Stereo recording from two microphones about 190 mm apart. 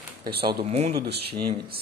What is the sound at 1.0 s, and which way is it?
Speech, 60° right (ahead or behind).